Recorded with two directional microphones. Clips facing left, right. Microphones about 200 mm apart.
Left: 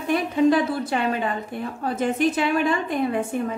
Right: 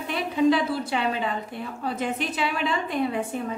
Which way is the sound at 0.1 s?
45° left (ahead or behind).